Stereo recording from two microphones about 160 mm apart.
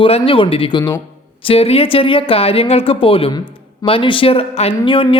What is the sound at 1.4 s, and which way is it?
Speech, 35° left (ahead or behind).